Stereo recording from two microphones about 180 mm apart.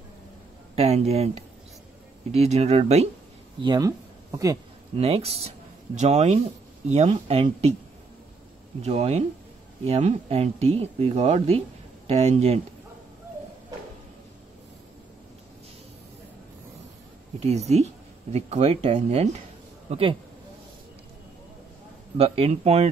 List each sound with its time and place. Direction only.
0.7 s speech: 35° right (ahead or behind)
3.6 s speech: 20° right (ahead or behind)
4.9 s speech: 30° right (ahead or behind)
8.8 s speech: 35° right (ahead or behind)
17.4 s speech: 35° right (ahead or behind)
22.1 s speech: 35° right (ahead or behind)